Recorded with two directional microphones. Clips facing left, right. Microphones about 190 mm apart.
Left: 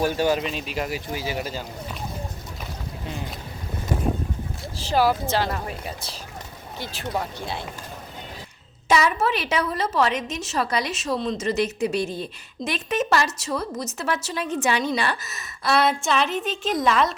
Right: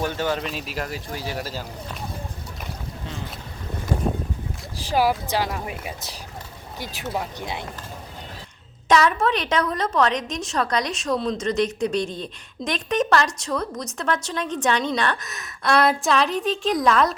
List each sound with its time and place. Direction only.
0.0 s speech: 10° left (ahead or behind)
0.4 s a woman's voice: centre (ahead or behind)
4.8 s speech: 10° right (ahead or behind)
8.9 s a woman's voice: 5° left (ahead or behind)